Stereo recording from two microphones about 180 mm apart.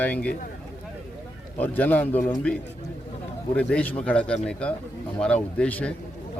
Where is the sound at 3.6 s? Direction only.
5° left (ahead or behind).